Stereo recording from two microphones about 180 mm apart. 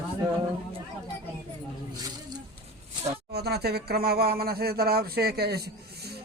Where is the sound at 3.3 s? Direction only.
65° right (ahead or behind).